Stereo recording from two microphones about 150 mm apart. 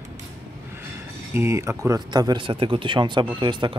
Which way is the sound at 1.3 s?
20° right (ahead or behind).